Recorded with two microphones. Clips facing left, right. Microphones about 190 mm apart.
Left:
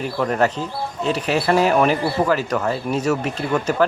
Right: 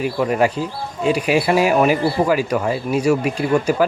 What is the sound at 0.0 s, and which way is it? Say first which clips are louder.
Speech: right 2 dB; 10° right (ahead or behind).